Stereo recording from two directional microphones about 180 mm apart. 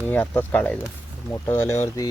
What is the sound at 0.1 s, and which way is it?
Speech, 10° left (ahead or behind).